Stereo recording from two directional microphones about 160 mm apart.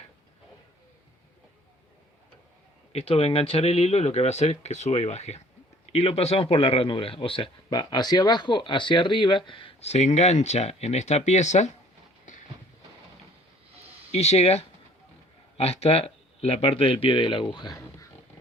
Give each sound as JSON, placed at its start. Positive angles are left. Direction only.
{"t": 2.9, "sound": "a man's voice", "side_deg": 40}
{"t": 14.1, "sound": "a man's voice", "side_deg": 40}